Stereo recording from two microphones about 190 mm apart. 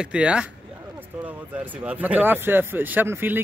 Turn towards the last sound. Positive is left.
turn(degrees=-10)  # may be behind; listen again after turning